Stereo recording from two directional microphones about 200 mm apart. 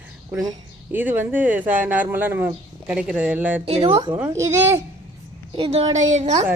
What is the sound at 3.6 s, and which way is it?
Speech, 30° right (ahead or behind).